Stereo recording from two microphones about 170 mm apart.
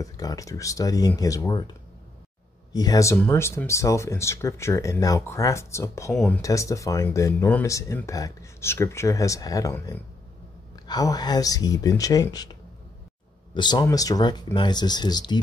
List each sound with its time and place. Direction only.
0.0 s speech: 20° left (ahead or behind)